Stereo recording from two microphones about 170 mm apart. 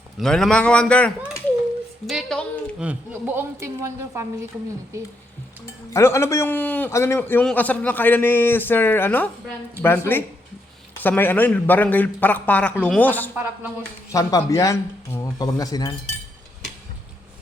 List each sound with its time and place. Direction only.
0.2 s a man's voice: 5° left (ahead or behind)
2.8 s a woman's voice: 10° right (ahead or behind)
5.9 s a man's voice: 15° left (ahead or behind)
13.3 s a woman's voice: 10° right (ahead or behind)
14.1 s speech: 20° left (ahead or behind)